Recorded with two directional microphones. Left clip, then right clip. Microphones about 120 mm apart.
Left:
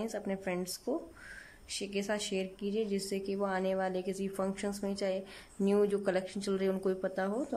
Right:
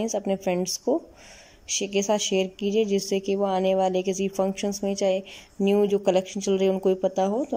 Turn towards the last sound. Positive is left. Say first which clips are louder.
# right 10 dB
turn(degrees=-10)  # may be behind; listen again after turning